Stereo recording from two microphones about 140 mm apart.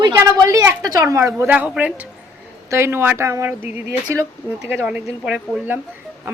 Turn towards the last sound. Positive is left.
turn(degrees=-5)  # may be behind; listen again after turning